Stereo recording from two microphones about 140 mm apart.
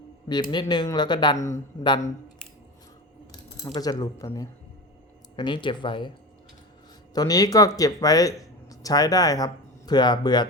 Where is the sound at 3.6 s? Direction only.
30° left (ahead or behind).